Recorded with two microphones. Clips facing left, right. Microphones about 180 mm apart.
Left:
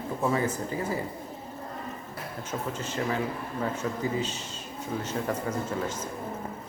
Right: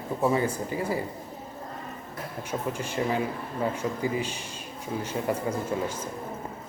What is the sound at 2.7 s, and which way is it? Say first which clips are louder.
Speech: right 3 dB; 10° right (ahead or behind).